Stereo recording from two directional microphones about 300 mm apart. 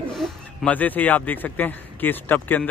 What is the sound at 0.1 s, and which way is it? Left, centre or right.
Speech, centre.